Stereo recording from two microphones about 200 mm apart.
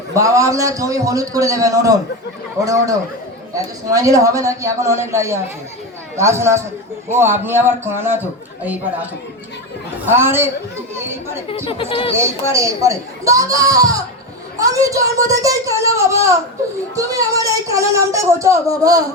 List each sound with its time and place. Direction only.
0.1 s speech: 15° right (ahead or behind)
11.4 s speech: 30° left (ahead or behind)
12.1 s speech: 15° right (ahead or behind)